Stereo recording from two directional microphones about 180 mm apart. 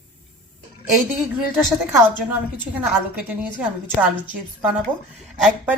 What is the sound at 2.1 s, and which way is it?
A woman's voice, 10° right (ahead or behind).